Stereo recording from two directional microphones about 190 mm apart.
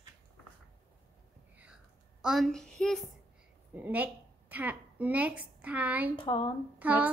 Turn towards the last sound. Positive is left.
turn(degrees=-10)  # may be behind; listen again after turning